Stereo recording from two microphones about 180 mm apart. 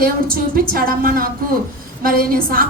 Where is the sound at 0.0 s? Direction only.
55° right (ahead or behind).